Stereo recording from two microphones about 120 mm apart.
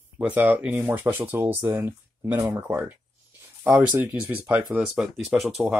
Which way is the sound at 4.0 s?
15° right (ahead or behind).